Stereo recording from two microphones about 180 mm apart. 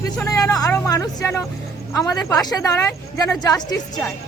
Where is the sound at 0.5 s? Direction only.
20° left (ahead or behind).